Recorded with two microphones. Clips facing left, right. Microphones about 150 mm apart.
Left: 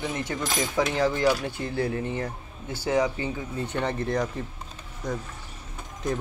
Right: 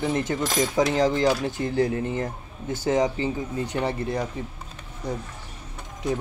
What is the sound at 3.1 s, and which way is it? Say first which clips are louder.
Speech: right 4 dB; 25° right (ahead or behind).